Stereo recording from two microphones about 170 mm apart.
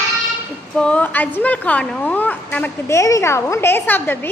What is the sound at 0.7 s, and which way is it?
A woman's voice, 5° left (ahead or behind).